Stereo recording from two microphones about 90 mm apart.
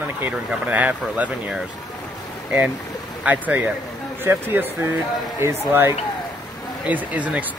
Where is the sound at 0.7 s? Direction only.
20° right (ahead or behind).